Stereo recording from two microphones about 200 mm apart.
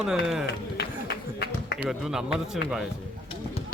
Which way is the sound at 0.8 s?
55° left (ahead or behind).